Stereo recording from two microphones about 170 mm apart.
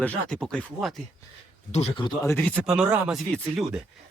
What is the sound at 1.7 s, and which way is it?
Speech, 40° left (ahead or behind).